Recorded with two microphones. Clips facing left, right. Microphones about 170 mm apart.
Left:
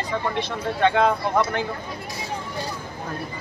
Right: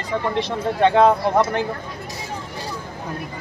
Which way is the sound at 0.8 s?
30° right (ahead or behind).